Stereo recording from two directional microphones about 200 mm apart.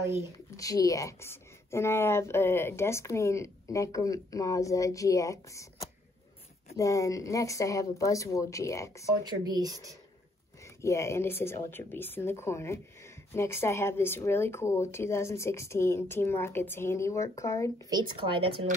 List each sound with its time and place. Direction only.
0.0 s speech: 15° right (ahead or behind)
0.6 s speech: 15° left (ahead or behind)
9.2 s speech: 20° right (ahead or behind)
10.6 s speech: 15° left (ahead or behind)
17.8 s speech: 20° right (ahead or behind)